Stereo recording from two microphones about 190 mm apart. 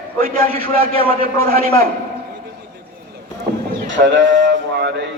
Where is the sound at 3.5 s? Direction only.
55° right (ahead or behind).